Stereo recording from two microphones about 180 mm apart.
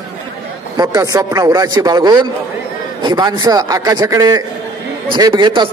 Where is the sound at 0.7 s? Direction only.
20° right (ahead or behind).